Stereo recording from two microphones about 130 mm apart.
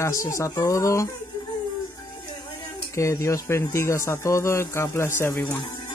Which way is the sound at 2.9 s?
25° left (ahead or behind).